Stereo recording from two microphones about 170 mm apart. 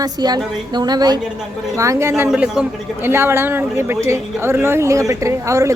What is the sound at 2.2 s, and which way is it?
Speech, 5° right (ahead or behind).